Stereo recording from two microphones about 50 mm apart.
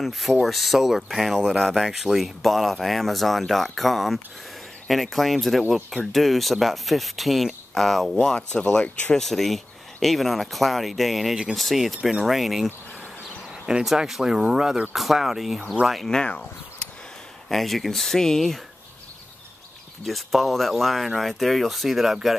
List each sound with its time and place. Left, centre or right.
0.0 s speech: centre
8.4 s speech: centre
9.1 s speech: centre
12.0 s speech: centre
12.3 s speech: centre
13.9 s speech: centre
15.0 s speech: centre
16.3 s a sound: left
17.5 s speech: centre
20.1 s speech: centre